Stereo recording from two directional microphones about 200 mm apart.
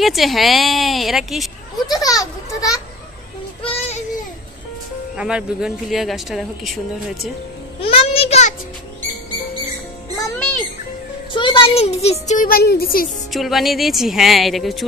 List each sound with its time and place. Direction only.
0.0 s speech: centre (ahead or behind)
1.9 s a child's voice: 20° left (ahead or behind)
3.6 s child singing: 30° left (ahead or behind)
5.1 s speech: 5° right (ahead or behind)
7.9 s a sound: 30° left (ahead or behind)
10.1 s music: 15° left (ahead or behind)
11.3 s a child's voice: 25° left (ahead or behind); by 13.1 s 45° left (ahead or behind)
13.3 s speech: centre (ahead or behind)